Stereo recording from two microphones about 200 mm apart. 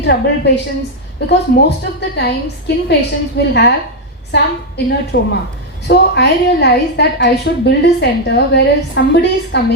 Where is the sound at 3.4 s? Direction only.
55° left (ahead or behind).